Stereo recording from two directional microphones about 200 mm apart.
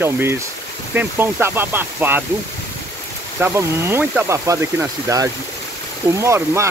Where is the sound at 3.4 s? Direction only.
10° right (ahead or behind).